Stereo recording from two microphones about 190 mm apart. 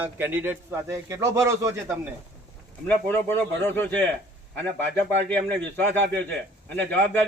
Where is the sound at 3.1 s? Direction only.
10° left (ahead or behind).